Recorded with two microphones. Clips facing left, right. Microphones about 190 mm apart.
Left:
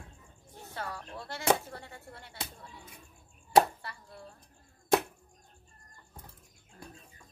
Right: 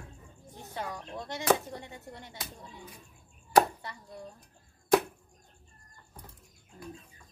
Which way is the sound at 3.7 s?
15° right (ahead or behind).